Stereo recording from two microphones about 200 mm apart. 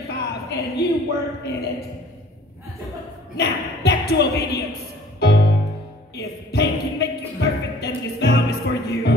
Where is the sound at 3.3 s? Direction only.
55° left (ahead or behind).